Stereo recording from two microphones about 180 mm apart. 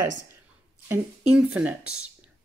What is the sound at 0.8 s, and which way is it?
Speech, 10° right (ahead or behind).